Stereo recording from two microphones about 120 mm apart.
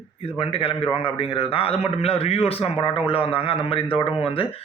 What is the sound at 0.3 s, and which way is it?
Speech, 50° left (ahead or behind).